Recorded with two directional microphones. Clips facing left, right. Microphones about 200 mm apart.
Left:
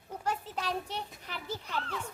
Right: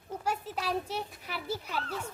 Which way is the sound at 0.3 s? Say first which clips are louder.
Right 1 dB; 10° right (ahead or behind).